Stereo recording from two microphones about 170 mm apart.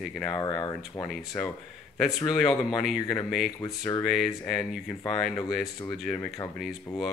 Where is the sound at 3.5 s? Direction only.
20° left (ahead or behind).